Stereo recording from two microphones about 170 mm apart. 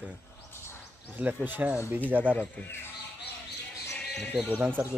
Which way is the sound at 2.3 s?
10° left (ahead or behind).